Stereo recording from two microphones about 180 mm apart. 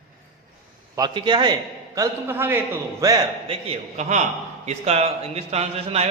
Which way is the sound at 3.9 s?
40° right (ahead or behind).